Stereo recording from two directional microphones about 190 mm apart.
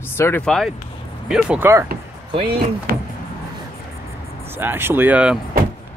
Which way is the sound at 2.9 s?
50° right (ahead or behind).